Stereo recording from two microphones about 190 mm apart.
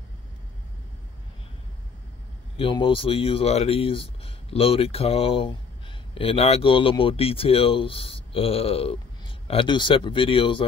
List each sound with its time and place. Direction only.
2.5 s speech: 30° left (ahead or behind)